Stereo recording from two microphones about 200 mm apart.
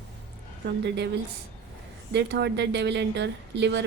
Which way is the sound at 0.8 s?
60° right (ahead or behind).